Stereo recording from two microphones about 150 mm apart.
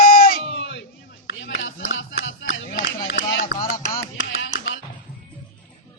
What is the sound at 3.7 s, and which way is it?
Music, 65° left (ahead or behind).